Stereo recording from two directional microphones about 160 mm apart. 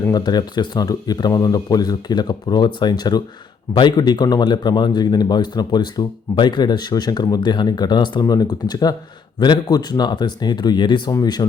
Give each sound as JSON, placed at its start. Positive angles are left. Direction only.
{"t": 0.0, "sound": "a man's voice", "side_deg": 25}